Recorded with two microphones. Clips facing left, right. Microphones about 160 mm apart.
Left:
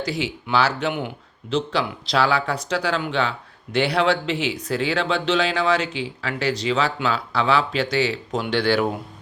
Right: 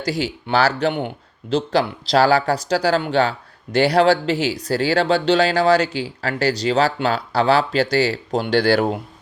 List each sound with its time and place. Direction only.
0.0 s speech: 40° right (ahead or behind)